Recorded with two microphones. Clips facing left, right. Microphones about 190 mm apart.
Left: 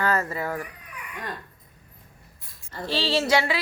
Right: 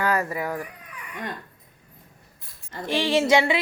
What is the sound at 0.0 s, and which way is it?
Speech, 15° right (ahead or behind).